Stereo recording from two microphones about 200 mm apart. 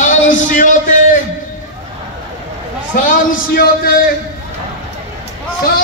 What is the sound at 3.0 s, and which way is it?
Speech, 45° left (ahead or behind).